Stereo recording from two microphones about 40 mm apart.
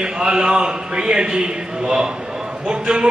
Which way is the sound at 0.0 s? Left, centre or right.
Centre.